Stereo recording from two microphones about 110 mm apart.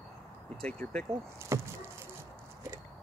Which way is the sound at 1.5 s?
25° right (ahead or behind).